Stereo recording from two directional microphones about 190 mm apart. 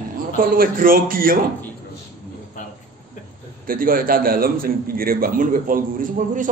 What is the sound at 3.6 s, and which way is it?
A man's voice, 50° right (ahead or behind).